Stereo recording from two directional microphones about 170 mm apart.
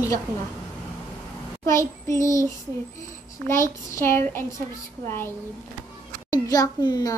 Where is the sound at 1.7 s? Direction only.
15° left (ahead or behind).